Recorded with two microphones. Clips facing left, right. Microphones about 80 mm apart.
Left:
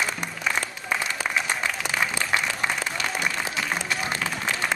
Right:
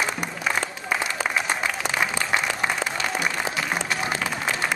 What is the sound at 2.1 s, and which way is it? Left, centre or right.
Applause, centre.